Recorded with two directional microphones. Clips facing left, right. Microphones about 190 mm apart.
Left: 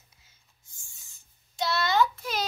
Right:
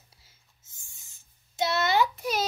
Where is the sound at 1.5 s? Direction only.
20° right (ahead or behind).